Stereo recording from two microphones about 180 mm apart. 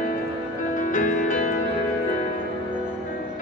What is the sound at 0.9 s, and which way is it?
Music, 45° left (ahead or behind).